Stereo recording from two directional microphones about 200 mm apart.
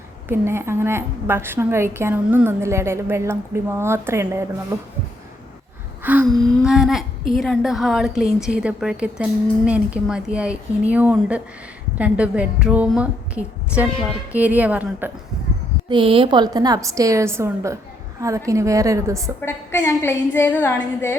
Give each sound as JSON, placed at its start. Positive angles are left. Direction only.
{"t": 0.3, "sound": "a woman's voice", "side_deg": -10}
{"t": 6.0, "sound": "gasp", "side_deg": -10}
{"t": 6.2, "sound": "a woman's voice", "side_deg": 0}
{"t": 15.9, "sound": "a woman's voice", "side_deg": -25}
{"t": 19.4, "sound": "a woman's voice", "side_deg": 15}